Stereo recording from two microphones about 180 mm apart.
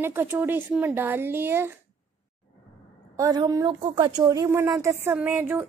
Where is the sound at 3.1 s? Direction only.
20° right (ahead or behind).